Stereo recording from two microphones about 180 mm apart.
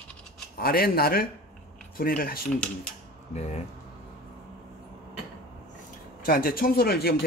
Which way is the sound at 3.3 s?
40° left (ahead or behind).